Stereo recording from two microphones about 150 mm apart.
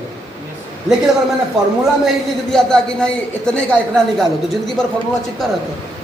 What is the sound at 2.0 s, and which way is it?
A man's voice, 5° left (ahead or behind).